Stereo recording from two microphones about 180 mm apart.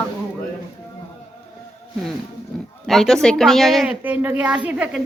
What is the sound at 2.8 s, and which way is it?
A woman's voice, centre (ahead or behind).